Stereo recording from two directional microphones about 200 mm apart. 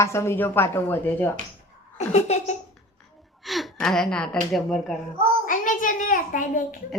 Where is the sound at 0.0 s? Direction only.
15° left (ahead or behind).